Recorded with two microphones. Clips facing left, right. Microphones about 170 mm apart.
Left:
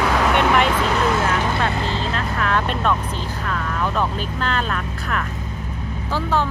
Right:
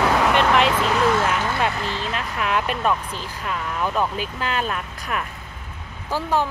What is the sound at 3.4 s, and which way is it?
Speech, 10° right (ahead or behind).